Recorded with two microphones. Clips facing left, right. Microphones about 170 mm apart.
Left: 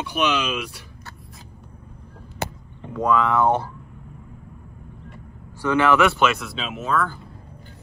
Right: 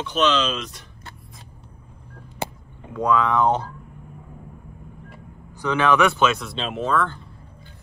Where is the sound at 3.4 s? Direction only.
15° right (ahead or behind).